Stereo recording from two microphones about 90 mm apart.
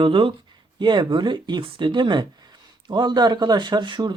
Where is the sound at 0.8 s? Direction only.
60° right (ahead or behind).